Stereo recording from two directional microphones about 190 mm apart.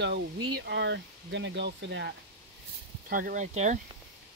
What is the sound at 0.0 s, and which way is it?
Speech, 65° right (ahead or behind).